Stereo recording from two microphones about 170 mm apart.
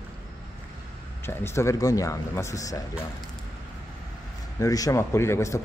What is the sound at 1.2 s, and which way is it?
Speech, 15° left (ahead or behind).